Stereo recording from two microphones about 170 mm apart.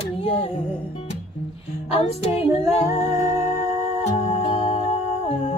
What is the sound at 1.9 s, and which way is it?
Female singing, 35° left (ahead or behind).